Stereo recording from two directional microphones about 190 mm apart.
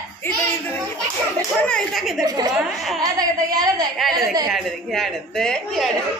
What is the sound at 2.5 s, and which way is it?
Speech, centre (ahead or behind).